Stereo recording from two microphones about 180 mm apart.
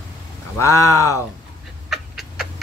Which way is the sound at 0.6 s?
15° left (ahead or behind).